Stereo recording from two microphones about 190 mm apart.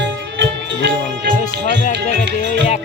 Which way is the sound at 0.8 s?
70° right (ahead or behind).